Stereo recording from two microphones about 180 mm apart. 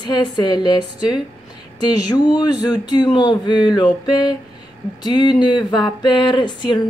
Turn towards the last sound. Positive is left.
turn(degrees=25)  # may be behind; listen again after turning